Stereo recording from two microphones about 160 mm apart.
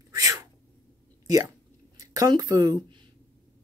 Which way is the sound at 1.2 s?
20° right (ahead or behind).